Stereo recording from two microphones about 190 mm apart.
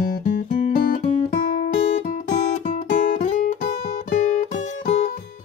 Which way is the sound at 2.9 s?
40° left (ahead or behind).